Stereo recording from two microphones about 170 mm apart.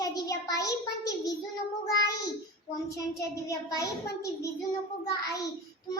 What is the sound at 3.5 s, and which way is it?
A child's voice, 20° left (ahead or behind).